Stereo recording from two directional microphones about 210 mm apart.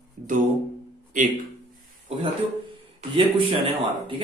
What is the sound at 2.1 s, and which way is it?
A man's voice, 30° right (ahead or behind).